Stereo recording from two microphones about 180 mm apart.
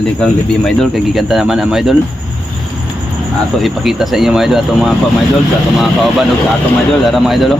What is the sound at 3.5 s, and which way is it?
Speech, centre (ahead or behind).